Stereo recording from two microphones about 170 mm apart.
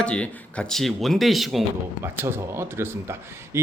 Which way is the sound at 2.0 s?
15° right (ahead or behind).